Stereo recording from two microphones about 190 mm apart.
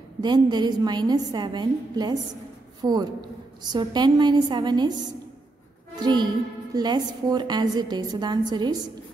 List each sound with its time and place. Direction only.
0.2 s a woman's voice: 25° right (ahead or behind)
5.9 s a woman's voice: 25° right (ahead or behind)